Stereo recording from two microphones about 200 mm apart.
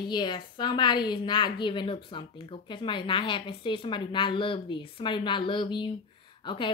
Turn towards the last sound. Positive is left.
turn(degrees=25)  # may be behind; listen again after turning